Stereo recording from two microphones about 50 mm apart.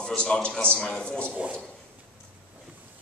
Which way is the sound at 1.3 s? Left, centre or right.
Right.